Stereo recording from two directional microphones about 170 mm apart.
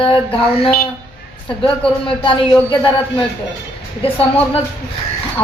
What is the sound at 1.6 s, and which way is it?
A man's voice, 30° left (ahead or behind).